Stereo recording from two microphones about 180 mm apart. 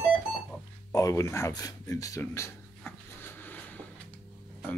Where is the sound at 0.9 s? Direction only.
20° left (ahead or behind).